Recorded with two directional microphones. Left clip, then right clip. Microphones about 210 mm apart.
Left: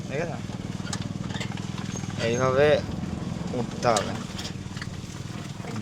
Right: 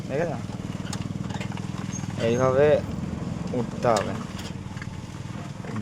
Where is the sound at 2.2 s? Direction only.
10° right (ahead or behind).